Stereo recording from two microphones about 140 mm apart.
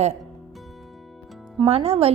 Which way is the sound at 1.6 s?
40° right (ahead or behind).